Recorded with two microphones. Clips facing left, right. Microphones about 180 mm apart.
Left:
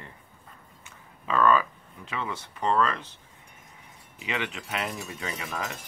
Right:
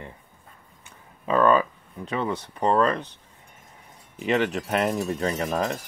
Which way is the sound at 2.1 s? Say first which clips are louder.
Right 7 dB; 40° right (ahead or behind).